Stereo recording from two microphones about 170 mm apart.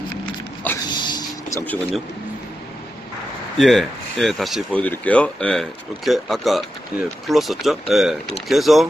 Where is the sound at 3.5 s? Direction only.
Centre (ahead or behind).